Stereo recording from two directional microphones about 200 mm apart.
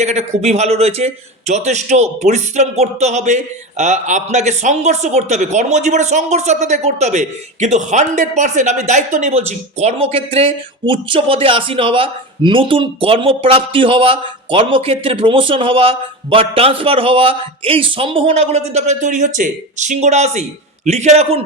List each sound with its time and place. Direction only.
0.0 s a man's voice: 35° right (ahead or behind)